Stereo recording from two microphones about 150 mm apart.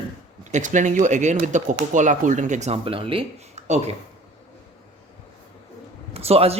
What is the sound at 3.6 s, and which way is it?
Speech, 50° right (ahead or behind).